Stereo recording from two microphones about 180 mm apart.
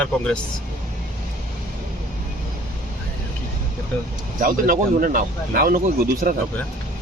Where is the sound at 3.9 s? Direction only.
10° left (ahead or behind).